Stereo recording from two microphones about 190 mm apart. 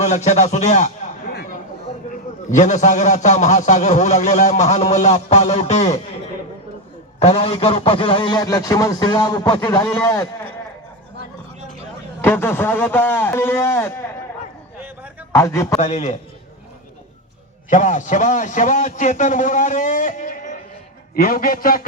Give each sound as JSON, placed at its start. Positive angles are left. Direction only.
{"t": 0.0, "sound": "a man's voice", "side_deg": 40}
{"t": 2.5, "sound": "a man's voice", "side_deg": 40}
{"t": 7.2, "sound": "a man's voice", "side_deg": 30}
{"t": 12.2, "sound": "a man's voice", "side_deg": 10}
{"t": 15.3, "sound": "a man's voice", "side_deg": 15}
{"t": 15.8, "sound": "a man's voice", "side_deg": 35}
{"t": 17.7, "sound": "a man's voice", "side_deg": 40}